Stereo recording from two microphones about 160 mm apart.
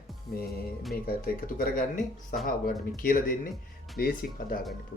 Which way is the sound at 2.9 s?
60° left (ahead or behind).